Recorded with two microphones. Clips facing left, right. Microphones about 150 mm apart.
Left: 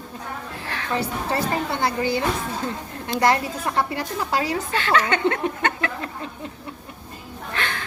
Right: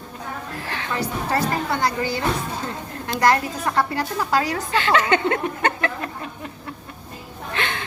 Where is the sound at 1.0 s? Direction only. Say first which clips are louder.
Right 4 dB; 25° left (ahead or behind).